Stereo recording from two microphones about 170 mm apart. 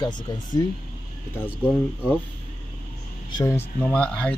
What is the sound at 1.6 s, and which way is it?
Speech, 5° right (ahead or behind).